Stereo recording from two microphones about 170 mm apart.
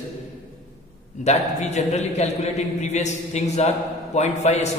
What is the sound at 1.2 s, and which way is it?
A man's voice, 45° left (ahead or behind).